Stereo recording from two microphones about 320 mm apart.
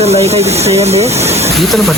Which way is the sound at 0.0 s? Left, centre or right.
Centre.